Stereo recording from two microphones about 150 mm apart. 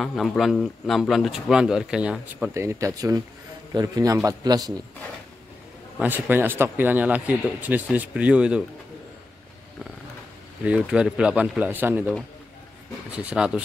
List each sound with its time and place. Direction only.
0.0 s a man's voice: centre (ahead or behind)
2.5 s a man's voice: 20° right (ahead or behind)
5.9 s a man's voice: 10° right (ahead or behind)
10.6 s a man's voice: 5° right (ahead or behind)
13.1 s a man's voice: 10° right (ahead or behind)